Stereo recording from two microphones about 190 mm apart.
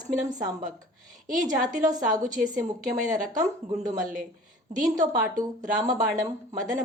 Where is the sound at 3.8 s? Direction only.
45° right (ahead or behind).